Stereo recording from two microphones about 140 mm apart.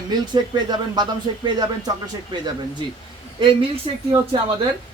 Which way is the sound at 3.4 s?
40° right (ahead or behind).